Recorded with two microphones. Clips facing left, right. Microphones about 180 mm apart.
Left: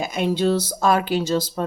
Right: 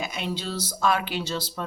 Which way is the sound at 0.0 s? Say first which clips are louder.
Left 10 dB; 50° left (ahead or behind).